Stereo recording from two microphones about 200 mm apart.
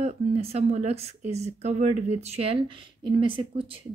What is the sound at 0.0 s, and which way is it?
Speech, 30° right (ahead or behind).